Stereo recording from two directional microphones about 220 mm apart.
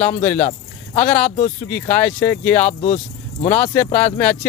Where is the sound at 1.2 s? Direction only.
35° left (ahead or behind).